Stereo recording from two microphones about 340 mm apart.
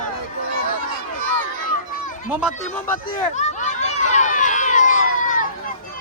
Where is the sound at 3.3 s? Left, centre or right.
Left.